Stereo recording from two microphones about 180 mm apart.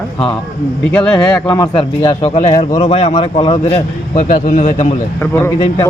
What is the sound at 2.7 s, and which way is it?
Speech, 25° left (ahead or behind).